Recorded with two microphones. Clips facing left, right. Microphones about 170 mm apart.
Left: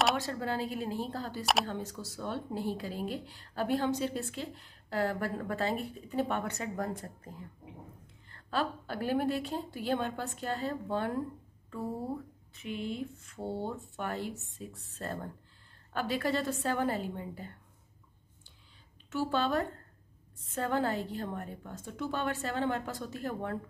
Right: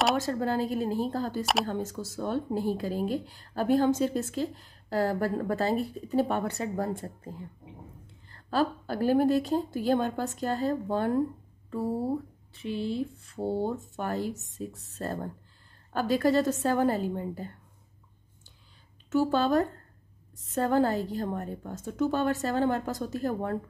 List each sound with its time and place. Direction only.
0.1 s speech: 45° right (ahead or behind)
1.4 s speech: centre (ahead or behind)
1.7 s speech: 45° right (ahead or behind); by 7.4 s 30° right (ahead or behind)
8.3 s speech: 40° right (ahead or behind)
19.0 s speech: 45° right (ahead or behind)